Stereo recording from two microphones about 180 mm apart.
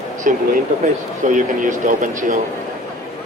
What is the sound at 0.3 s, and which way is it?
Speech, 45° right (ahead or behind).